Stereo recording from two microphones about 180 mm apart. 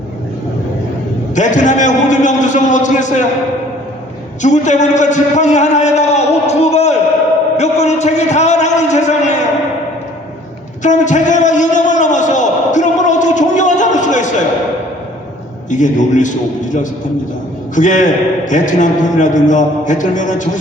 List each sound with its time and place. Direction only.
1.4 s a man's voice: 45° left (ahead or behind)
4.4 s a man's voice: 40° left (ahead or behind)
10.8 s a sound: 45° left (ahead or behind)
15.7 s a man's voice: 45° left (ahead or behind)